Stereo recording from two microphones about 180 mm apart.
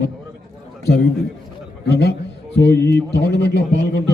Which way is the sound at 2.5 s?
70° left (ahead or behind).